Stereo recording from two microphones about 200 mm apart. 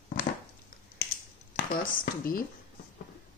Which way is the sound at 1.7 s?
45° left (ahead or behind).